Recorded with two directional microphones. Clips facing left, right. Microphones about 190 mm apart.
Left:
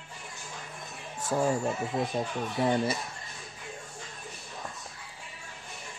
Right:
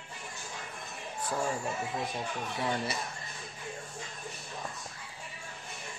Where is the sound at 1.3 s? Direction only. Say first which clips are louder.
Left 6 dB; 30° left (ahead or behind).